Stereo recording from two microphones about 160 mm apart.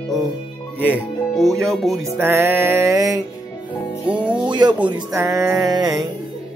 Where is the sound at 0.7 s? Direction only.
5° left (ahead or behind).